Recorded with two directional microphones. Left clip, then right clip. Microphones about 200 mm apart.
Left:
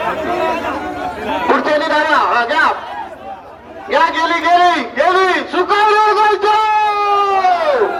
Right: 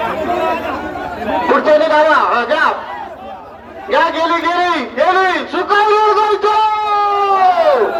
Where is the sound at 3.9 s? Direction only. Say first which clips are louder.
Even; 30° left (ahead or behind).